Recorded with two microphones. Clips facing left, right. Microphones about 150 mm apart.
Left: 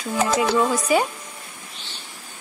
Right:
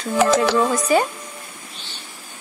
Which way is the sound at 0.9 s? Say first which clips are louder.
Right 2 dB; 10° left (ahead or behind).